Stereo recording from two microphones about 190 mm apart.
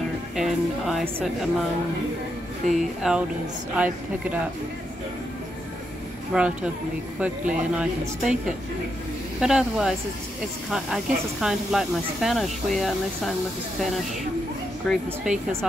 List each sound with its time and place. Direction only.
0.4 s speech: centre (ahead or behind)
2.6 s speech: centre (ahead or behind)
6.3 s speech: 5° right (ahead or behind)
11.4 s speech: centre (ahead or behind)
14.8 s speech: centre (ahead or behind)